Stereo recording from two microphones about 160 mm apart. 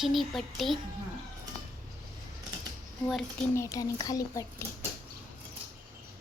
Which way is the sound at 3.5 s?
20° left (ahead or behind).